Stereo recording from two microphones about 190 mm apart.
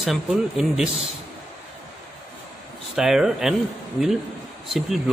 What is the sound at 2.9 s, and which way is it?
Speech, 5° right (ahead or behind).